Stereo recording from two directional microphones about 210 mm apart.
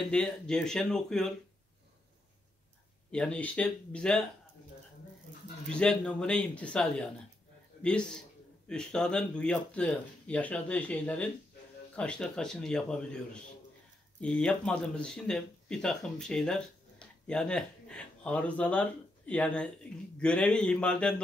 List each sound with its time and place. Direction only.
0.1 s speech: 5° left (ahead or behind)
3.1 s speech: 5° left (ahead or behind)
5.7 s speech: 5° left (ahead or behind)